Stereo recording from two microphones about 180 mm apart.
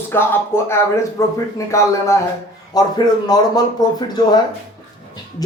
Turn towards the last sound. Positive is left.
turn(degrees=20)  # may be behind; listen again after turning